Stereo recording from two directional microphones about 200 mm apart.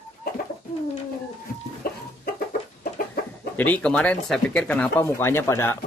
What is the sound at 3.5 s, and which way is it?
Speech, 5° left (ahead or behind).